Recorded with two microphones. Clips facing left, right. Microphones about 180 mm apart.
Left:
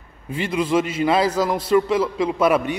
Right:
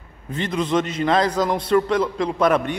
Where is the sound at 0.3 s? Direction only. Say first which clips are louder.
Left 1 dB; 10° left (ahead or behind).